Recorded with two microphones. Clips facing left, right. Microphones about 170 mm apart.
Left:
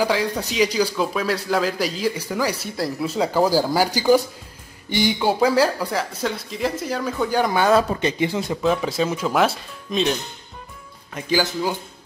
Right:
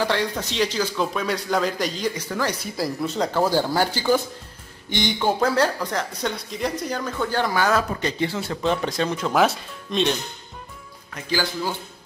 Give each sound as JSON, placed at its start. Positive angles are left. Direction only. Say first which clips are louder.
{"t": 0.0, "sound": "speech", "louder": "left 2 dB", "side_deg": 10}
{"t": 8.6, "sound": "speech", "louder": "left 2 dB", "side_deg": 5}
{"t": 11.1, "sound": "speech", "louder": "left 4 dB", "side_deg": 20}